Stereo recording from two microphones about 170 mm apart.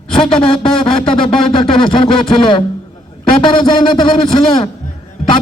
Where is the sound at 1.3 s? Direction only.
30° left (ahead or behind).